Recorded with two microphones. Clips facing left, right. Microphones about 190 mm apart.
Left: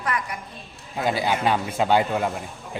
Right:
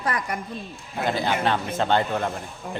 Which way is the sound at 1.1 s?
10° left (ahead or behind).